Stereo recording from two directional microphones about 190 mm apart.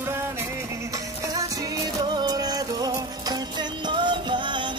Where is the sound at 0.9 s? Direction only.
15° right (ahead or behind).